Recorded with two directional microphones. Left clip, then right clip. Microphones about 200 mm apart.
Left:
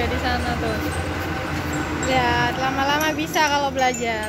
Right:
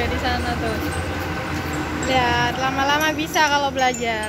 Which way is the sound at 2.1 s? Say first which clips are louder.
Right 1 dB; 5° right (ahead or behind).